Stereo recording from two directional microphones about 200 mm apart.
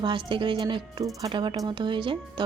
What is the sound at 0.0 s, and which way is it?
Speech, 25° right (ahead or behind).